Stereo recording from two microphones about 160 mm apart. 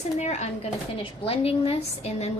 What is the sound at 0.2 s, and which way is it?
A woman's voice, 45° left (ahead or behind).